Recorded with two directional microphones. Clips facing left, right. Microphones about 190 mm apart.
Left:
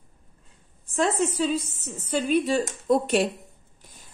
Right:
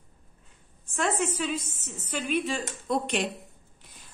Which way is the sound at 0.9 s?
35° left (ahead or behind).